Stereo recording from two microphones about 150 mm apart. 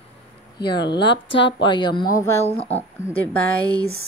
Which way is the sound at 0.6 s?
30° left (ahead or behind).